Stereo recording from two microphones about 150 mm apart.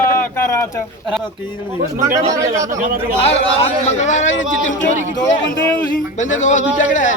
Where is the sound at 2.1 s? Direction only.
20° right (ahead or behind).